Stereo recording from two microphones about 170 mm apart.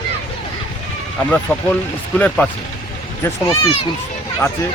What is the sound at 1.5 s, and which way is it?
Speech, 10° left (ahead or behind).